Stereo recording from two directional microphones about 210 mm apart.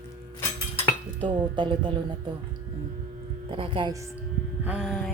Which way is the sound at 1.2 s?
20° right (ahead or behind).